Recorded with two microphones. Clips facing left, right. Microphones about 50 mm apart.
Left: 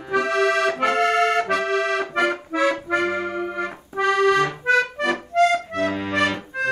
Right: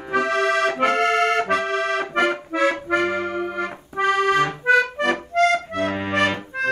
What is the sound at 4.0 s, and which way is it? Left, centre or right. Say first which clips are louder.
Accordion: left 1 dB; right.